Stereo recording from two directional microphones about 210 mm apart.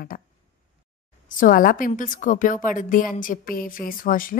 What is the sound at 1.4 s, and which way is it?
A woman's voice, 40° left (ahead or behind).